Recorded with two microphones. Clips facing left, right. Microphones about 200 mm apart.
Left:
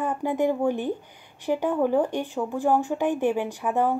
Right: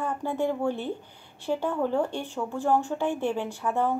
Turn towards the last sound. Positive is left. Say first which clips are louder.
# left 3 dB
turn(degrees=15)  # may be behind; listen again after turning